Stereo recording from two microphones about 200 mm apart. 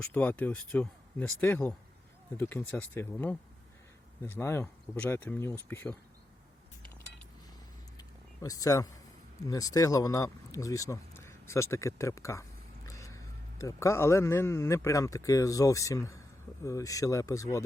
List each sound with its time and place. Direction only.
0.0 s speech: 10° left (ahead or behind)
7.9 s a sound: 15° left (ahead or behind)
9.4 s speech: 15° left (ahead or behind)